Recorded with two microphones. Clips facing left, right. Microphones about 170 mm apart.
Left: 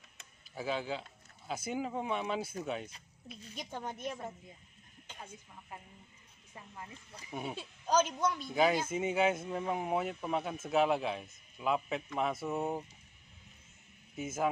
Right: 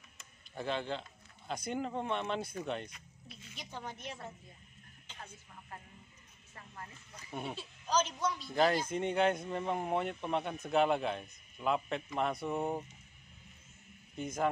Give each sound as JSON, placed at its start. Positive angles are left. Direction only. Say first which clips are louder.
{"t": 0.6, "sound": "speech", "louder": "even", "side_deg": 5}
{"t": 3.4, "sound": "a man's voice", "louder": "left 3 dB", "side_deg": 45}
{"t": 6.5, "sound": "speech", "louder": "left 2 dB", "side_deg": 10}
{"t": 7.5, "sound": "a man's voice", "louder": "left 3 dB", "side_deg": 50}
{"t": 8.5, "sound": "speech", "louder": "right 1 dB", "side_deg": 5}
{"t": 14.1, "sound": "speech", "louder": "even", "side_deg": 5}